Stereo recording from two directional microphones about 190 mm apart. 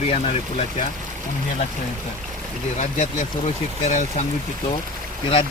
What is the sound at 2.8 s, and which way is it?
Speech, 40° left (ahead or behind).